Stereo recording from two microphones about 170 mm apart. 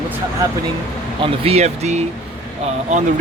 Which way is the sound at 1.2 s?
35° right (ahead or behind).